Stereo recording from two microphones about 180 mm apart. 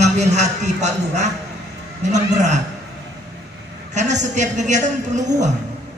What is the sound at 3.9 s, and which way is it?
A man's voice, 40° right (ahead or behind).